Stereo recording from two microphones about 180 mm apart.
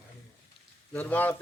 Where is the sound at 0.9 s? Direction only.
10° left (ahead or behind).